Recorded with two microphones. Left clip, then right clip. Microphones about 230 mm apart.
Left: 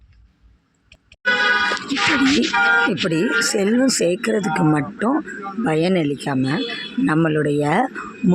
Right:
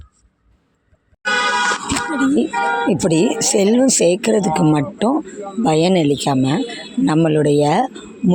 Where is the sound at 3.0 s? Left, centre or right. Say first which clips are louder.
Right 2 dB; centre.